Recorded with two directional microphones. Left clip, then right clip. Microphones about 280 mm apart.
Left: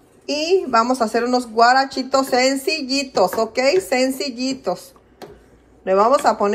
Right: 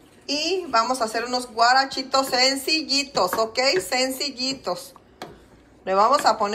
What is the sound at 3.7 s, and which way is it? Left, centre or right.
A woman's voice, centre.